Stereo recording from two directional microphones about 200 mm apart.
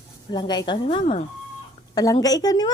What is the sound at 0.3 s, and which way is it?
Speech, 20° left (ahead or behind).